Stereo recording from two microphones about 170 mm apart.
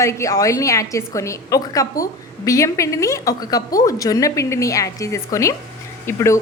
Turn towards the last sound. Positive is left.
turn(degrees=15)  # may be behind; listen again after turning